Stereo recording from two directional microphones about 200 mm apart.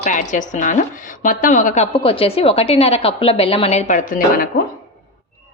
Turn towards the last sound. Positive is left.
turn(degrees=45)  # may be behind; listen again after turning